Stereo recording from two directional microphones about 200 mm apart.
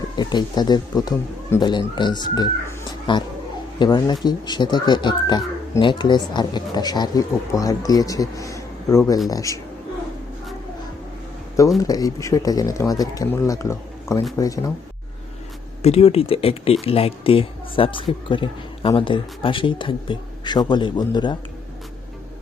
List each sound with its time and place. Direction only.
0.2 s speech: 20° left (ahead or behind)
11.8 s speech: 20° left (ahead or behind)
15.8 s speech: 30° left (ahead or behind)